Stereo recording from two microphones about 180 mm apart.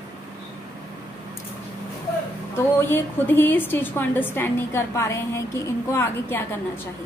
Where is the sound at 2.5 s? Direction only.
10° left (ahead or behind).